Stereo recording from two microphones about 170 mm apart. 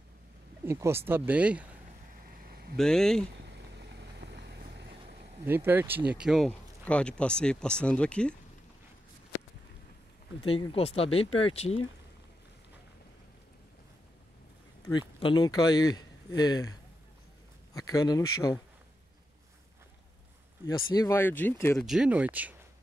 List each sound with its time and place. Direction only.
0.7 s speech: 15° right (ahead or behind)
2.3 s a sound: 60° right (ahead or behind)
2.8 s speech: 5° left (ahead or behind)
3.4 s vehicle: 80° right
5.4 s speech: 10° right (ahead or behind); by 8.4 s 5° left (ahead or behind)
10.4 s speech: 35° left (ahead or behind)
14.9 s speech: 30° left (ahead or behind)
17.7 s speech: 20° left (ahead or behind)
20.6 s speech: 20° left (ahead or behind)
21.7 s speech: centre (ahead or behind)